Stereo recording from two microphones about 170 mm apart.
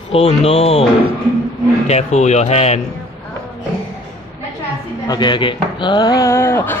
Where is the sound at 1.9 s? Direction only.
40° left (ahead or behind).